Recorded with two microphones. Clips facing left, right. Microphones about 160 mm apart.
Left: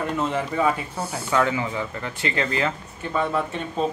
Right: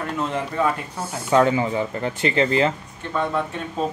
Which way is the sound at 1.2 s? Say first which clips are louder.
Right 5 dB; 25° right (ahead or behind).